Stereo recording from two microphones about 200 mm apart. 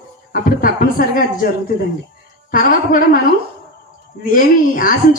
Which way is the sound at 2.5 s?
45° left (ahead or behind).